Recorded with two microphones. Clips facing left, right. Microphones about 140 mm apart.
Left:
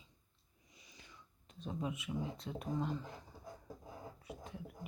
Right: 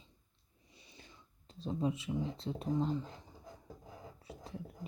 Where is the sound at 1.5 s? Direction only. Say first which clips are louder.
Right 6 dB; 30° right (ahead or behind).